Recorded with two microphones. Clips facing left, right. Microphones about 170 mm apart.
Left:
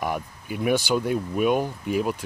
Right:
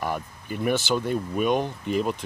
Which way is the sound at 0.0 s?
10° left (ahead or behind).